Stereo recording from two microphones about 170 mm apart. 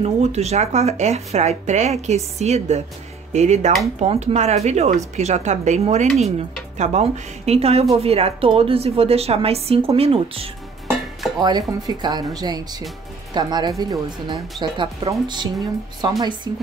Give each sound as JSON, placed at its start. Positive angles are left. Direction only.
{"t": 0.0, "sound": "speech", "side_deg": -40}
{"t": 11.3, "sound": "speech", "side_deg": -25}